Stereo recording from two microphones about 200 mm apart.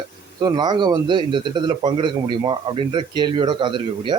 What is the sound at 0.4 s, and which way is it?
A man's voice, 20° right (ahead or behind).